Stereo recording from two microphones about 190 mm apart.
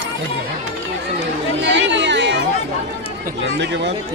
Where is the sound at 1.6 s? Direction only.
70° right (ahead or behind).